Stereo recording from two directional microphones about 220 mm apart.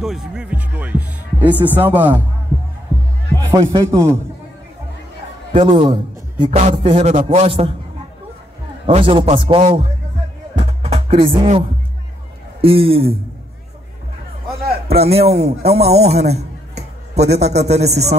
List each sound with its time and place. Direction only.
0.0 s music: centre (ahead or behind)
2.0 s speech: 10° right (ahead or behind)
3.3 s speech: 15° right (ahead or behind)
5.5 s a man's voice: 25° right (ahead or behind)
6.5 s music: 25° right (ahead or behind)
8.8 s music: 25° right (ahead or behind)
12.6 s music: 25° right (ahead or behind)
14.9 s a man's voice: 30° right (ahead or behind)